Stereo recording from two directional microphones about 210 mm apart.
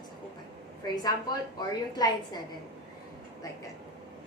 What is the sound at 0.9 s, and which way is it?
A woman's voice, 20° left (ahead or behind).